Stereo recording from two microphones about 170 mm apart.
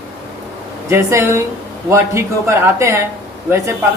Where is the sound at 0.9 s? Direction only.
15° right (ahead or behind).